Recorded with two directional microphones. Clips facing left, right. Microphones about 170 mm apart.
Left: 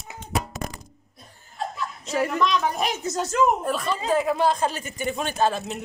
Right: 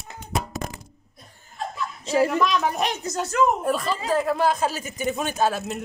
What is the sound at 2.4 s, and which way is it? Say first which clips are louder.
Speech: right 1 dB; 5° right (ahead or behind).